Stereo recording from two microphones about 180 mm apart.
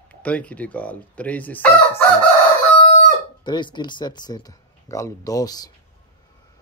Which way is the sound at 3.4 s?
25° left (ahead or behind).